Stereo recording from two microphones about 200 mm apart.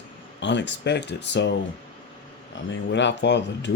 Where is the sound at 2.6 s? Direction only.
60° left (ahead or behind).